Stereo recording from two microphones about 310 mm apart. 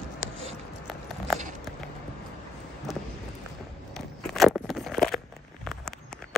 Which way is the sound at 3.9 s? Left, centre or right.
Centre.